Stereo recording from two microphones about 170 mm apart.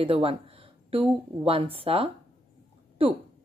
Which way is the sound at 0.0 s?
35° right (ahead or behind).